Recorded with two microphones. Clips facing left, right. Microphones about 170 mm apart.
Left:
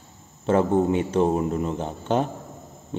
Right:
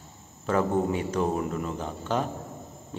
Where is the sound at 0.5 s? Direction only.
30° left (ahead or behind).